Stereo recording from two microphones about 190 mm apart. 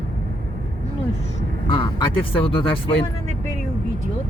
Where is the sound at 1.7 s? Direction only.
25° left (ahead or behind).